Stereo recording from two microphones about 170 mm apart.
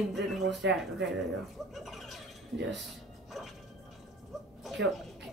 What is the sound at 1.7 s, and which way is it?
Squeal, centre (ahead or behind).